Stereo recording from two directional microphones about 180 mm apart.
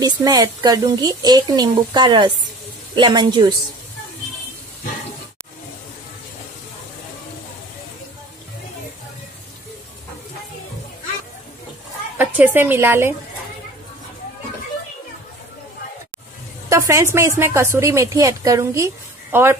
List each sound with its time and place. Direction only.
0.0 s a woman's voice: 20° right (ahead or behind)
12.2 s speech: 10° right (ahead or behind)
16.6 s a woman's voice: 15° right (ahead or behind)